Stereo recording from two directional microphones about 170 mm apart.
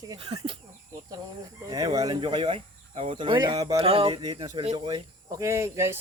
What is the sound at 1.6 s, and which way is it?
Speech, 20° right (ahead or behind).